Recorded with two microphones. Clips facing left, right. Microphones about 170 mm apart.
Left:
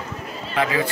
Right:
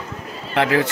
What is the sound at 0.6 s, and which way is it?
Speech, 70° right (ahead or behind).